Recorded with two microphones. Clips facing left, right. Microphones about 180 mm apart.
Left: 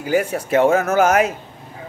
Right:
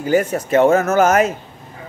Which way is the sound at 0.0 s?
10° left (ahead or behind).